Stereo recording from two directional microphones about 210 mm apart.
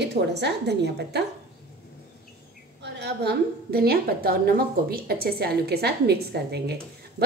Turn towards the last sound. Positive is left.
turn(degrees=-50)  # may be behind; listen again after turning